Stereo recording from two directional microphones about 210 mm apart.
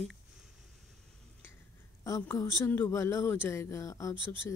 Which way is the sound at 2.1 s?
15° left (ahead or behind).